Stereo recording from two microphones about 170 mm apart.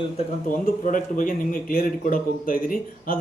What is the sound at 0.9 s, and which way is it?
Speech, 50° left (ahead or behind).